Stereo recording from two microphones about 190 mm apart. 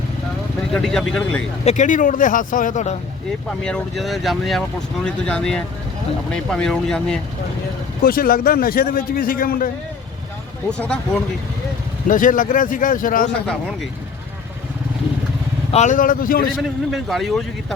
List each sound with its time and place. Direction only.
0.7 s a man's voice: 5° left (ahead or behind)
1.6 s a man's voice: 40° left (ahead or behind)
3.6 s a man's voice: 5° left (ahead or behind)
8.0 s a man's voice: 50° left (ahead or behind)
10.7 s a man's voice: 5° left (ahead or behind)
12.0 s a man's voice: 45° left (ahead or behind)
15.7 s a man's voice: 40° left (ahead or behind)
16.6 s a man's voice: centre (ahead or behind)